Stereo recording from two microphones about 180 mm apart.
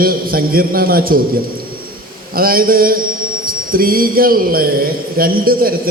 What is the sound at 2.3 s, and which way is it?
A man's voice, 55° right (ahead or behind).